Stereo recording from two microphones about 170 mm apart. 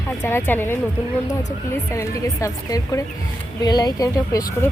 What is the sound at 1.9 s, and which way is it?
Speech, 20° left (ahead or behind).